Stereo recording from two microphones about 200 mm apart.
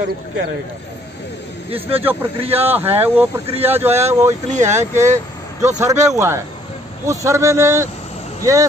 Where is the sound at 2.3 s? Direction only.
30° right (ahead or behind).